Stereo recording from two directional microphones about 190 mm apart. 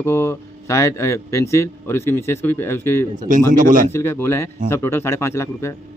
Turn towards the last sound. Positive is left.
turn(degrees=15)  # may be behind; listen again after turning